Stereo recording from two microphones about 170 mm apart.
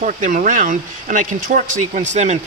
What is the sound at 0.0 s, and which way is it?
Speech, 50° right (ahead or behind).